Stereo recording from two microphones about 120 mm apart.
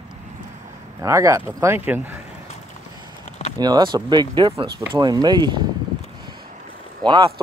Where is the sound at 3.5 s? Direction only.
35° right (ahead or behind).